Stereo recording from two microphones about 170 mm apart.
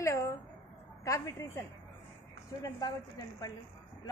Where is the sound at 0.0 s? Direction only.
15° left (ahead or behind).